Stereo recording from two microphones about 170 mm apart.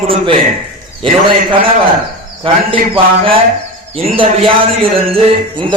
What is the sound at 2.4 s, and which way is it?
A man's voice, 30° right (ahead or behind).